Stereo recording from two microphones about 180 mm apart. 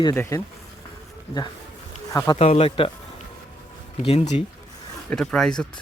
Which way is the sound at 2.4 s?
35° left (ahead or behind).